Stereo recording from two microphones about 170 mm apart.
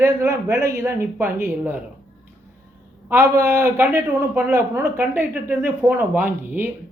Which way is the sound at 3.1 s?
15° right (ahead or behind).